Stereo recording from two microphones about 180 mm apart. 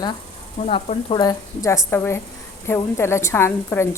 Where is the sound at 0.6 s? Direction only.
35° left (ahead or behind).